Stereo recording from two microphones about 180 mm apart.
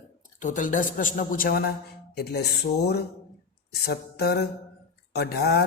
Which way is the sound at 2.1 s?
65° left (ahead or behind).